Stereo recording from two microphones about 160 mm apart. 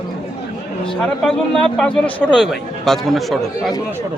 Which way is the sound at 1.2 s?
5° left (ahead or behind).